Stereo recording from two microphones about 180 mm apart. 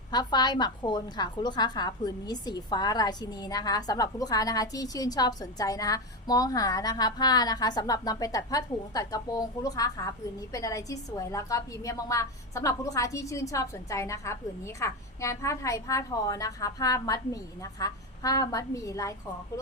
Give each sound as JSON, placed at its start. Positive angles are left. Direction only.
{"t": 0.1, "sound": "a woman's voice", "side_deg": 25}